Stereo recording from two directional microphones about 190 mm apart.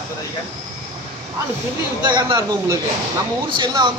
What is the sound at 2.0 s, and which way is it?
Speech, 25° right (ahead or behind).